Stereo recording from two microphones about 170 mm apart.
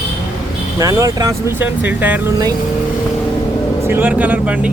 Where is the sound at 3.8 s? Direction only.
10° right (ahead or behind).